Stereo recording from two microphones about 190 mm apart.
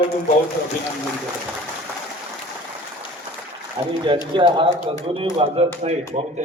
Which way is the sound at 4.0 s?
25° right (ahead or behind).